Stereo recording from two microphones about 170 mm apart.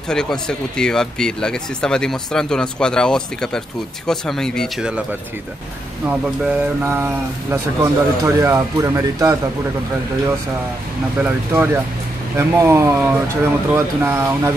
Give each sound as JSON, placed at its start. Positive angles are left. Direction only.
{"t": 0.1, "sound": "speech", "side_deg": 5}
{"t": 6.8, "sound": "speech", "side_deg": -15}
{"t": 11.2, "sound": "speech", "side_deg": -15}